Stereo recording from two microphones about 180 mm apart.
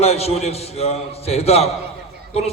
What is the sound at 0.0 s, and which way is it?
A man's voice, 35° left (ahead or behind).